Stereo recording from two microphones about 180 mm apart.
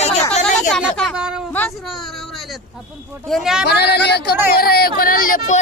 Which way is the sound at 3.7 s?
65° left (ahead or behind).